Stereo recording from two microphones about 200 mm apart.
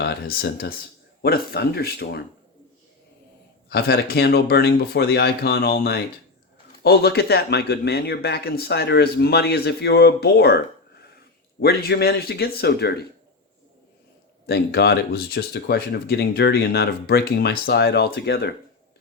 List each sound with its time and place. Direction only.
0.0 s speech: 50° left (ahead or behind)
3.7 s speech: 55° left (ahead or behind)
11.6 s speech: 50° left (ahead or behind)
14.4 s speech: 55° left (ahead or behind)